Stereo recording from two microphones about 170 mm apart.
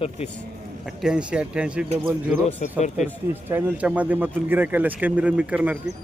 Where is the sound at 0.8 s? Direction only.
5° right (ahead or behind).